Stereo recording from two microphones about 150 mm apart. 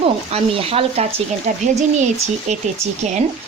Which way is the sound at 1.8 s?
50° right (ahead or behind).